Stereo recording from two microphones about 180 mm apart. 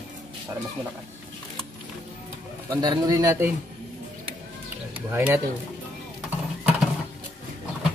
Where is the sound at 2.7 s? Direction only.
20° right (ahead or behind).